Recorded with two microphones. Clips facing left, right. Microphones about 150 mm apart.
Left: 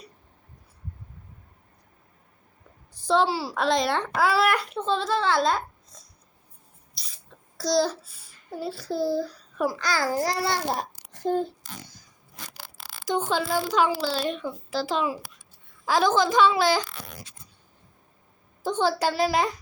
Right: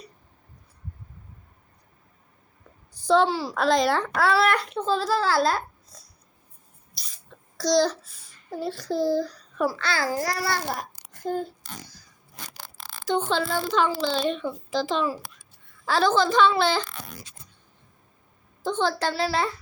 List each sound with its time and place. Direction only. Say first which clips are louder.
3.0 s a child's voice: right 2 dB; centre (ahead or behind)
7.0 s a sound: right 2 dB; centre (ahead or behind)
10.1 s a child's voice: left 1 dB; 25° left (ahead or behind)
12.5 s a woman's voice: right 2 dB; 10° left (ahead or behind)
18.6 s a woman's voice: left 1 dB; 10° left (ahead or behind)